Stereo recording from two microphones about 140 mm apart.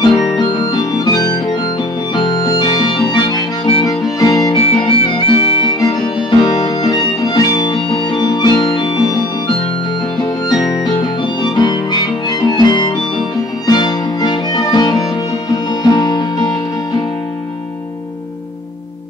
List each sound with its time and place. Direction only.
0.0 s music: 30° left (ahead or behind)
2.1 s harmonica: 30° left (ahead or behind)
3.8 s music: 25° left (ahead or behind)
4.6 s music: 40° left (ahead or behind)
5.8 s music: 25° left (ahead or behind)